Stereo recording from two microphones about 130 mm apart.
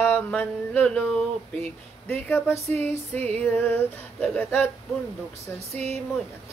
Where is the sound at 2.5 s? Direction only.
55° right (ahead or behind).